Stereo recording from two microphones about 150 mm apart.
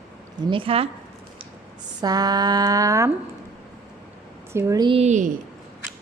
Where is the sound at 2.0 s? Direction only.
25° right (ahead or behind).